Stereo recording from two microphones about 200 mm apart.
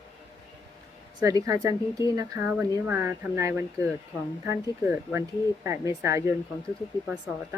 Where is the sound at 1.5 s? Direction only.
15° right (ahead or behind).